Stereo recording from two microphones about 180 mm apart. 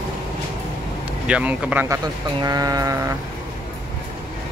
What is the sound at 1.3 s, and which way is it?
Speech, 5° right (ahead or behind).